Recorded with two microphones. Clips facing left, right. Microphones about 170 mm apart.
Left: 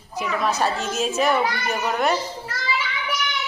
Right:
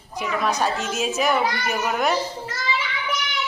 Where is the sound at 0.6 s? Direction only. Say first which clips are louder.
Left 1 dB; centre (ahead or behind).